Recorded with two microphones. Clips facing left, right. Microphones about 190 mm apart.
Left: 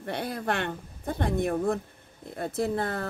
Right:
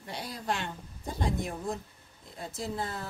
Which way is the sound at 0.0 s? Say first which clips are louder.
Left 7 dB; 60° left (ahead or behind).